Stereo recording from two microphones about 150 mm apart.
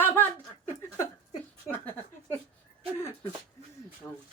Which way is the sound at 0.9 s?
20° left (ahead or behind).